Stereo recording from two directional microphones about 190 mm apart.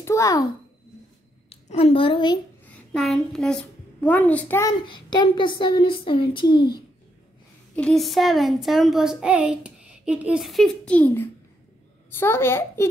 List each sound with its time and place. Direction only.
0.0 s a child's voice: 15° left (ahead or behind)
1.5 s a woman's voice: 30° left (ahead or behind)
2.6 s a woman's voice: 5° left (ahead or behind)
4.8 s speech: 25° left (ahead or behind)
7.7 s a child's voice: 5° left (ahead or behind)